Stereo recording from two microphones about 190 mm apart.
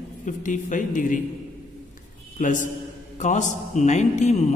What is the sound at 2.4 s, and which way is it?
A man's voice, 40° left (ahead or behind).